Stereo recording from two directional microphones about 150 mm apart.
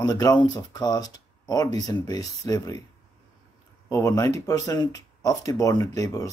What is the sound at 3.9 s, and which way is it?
Speech, 20° left (ahead or behind).